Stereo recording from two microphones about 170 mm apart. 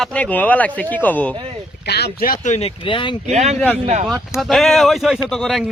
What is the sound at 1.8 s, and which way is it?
Speech, 75° left (ahead or behind).